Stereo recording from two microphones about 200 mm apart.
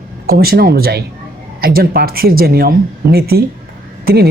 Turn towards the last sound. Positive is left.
turn(degrees=-50)  # may be behind; listen again after turning